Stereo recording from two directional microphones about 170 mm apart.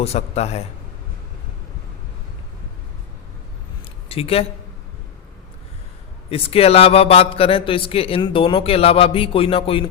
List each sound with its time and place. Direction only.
0.0 s a man's voice: 35° left (ahead or behind)
4.1 s a man's voice: 35° left (ahead or behind)
6.3 s a man's voice: 35° left (ahead or behind)